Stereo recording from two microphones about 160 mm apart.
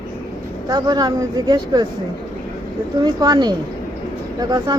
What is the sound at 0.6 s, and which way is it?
Speech, 25° right (ahead or behind).